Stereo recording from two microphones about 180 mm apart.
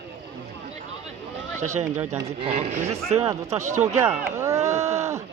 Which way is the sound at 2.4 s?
35° right (ahead or behind).